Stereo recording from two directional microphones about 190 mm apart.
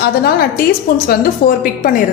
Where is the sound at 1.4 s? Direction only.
50° left (ahead or behind).